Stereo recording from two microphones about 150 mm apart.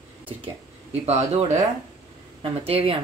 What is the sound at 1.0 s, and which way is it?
Speech, 50° right (ahead or behind).